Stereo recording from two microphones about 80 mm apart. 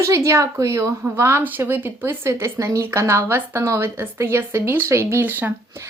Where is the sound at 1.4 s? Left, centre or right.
Right.